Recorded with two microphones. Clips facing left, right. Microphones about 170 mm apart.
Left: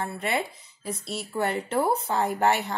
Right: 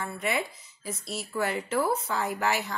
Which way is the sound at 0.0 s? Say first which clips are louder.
Left 2 dB; 60° left (ahead or behind).